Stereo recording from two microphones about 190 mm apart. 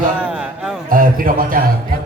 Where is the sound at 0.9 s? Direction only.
45° right (ahead or behind).